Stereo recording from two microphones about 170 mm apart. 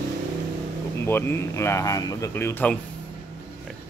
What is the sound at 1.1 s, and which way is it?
Speech, 15° left (ahead or behind).